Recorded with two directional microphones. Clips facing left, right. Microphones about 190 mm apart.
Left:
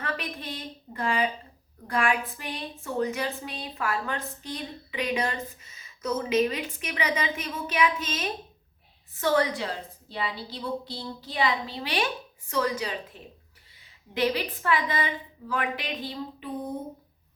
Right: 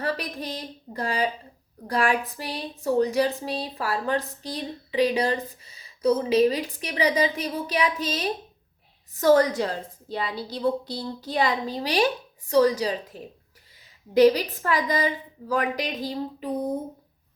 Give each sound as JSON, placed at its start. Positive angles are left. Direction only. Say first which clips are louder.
{"t": 0.0, "sound": "a woman's voice", "louder": "right 5 dB", "side_deg": -35}